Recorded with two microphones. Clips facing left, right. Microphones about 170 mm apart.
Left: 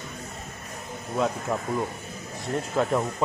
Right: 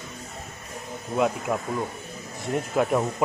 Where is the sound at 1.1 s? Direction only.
10° right (ahead or behind).